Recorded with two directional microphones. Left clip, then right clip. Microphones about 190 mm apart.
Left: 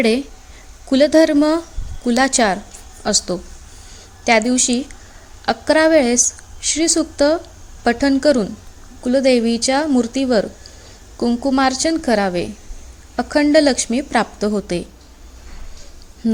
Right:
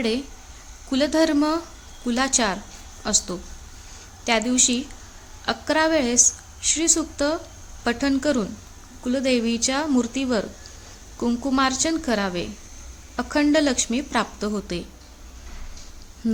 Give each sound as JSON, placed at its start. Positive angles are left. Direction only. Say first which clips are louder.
{"t": 0.9, "sound": "a woman's voice", "louder": "left 8 dB", "side_deg": 30}
{"t": 16.2, "sound": "speech", "louder": "left 6 dB", "side_deg": 15}